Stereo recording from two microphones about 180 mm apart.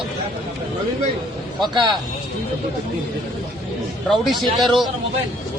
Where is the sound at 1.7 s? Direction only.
25° right (ahead or behind).